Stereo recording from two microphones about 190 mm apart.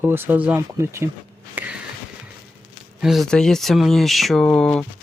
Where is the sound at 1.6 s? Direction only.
10° right (ahead or behind).